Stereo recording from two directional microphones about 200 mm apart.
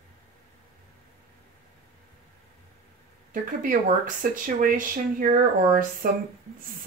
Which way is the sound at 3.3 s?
40° right (ahead or behind).